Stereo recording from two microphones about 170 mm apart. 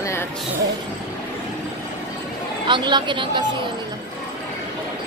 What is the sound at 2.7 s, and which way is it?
Speech, 25° right (ahead or behind).